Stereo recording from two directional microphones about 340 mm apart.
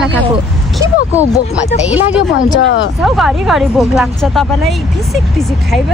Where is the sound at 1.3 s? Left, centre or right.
Centre.